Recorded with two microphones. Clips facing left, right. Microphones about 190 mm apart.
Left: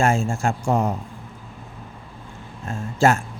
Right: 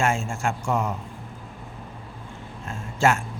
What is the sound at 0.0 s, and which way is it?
Speech, 35° left (ahead or behind).